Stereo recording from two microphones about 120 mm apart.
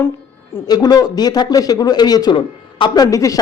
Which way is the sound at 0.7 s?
35° left (ahead or behind).